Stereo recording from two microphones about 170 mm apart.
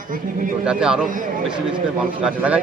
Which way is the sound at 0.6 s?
5° right (ahead or behind).